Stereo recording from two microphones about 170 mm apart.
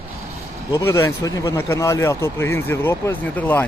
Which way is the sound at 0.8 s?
15° left (ahead or behind).